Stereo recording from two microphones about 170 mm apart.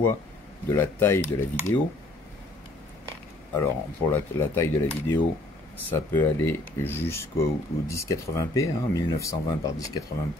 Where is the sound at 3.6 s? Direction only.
15° left (ahead or behind).